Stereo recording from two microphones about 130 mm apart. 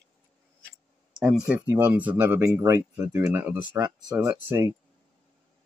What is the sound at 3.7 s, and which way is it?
Speech, 25° right (ahead or behind).